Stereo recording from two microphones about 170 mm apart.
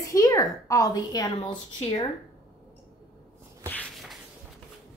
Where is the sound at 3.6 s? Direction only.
10° left (ahead or behind).